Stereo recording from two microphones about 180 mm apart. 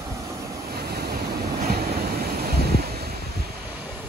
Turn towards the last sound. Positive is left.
turn(degrees=-60)  # may be behind; listen again after turning